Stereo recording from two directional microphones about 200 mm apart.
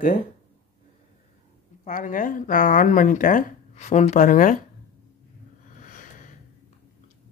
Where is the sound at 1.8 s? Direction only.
40° left (ahead or behind).